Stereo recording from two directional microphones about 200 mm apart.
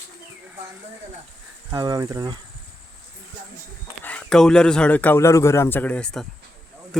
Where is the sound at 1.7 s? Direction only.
20° right (ahead or behind).